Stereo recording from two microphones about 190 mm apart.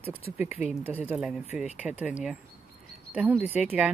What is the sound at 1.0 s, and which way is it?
Speech, 5° right (ahead or behind).